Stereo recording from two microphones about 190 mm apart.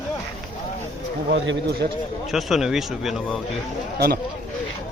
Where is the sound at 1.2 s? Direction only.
70° right (ahead or behind).